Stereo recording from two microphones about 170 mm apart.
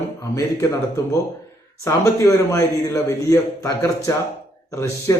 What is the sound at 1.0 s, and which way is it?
Speech, 20° left (ahead or behind).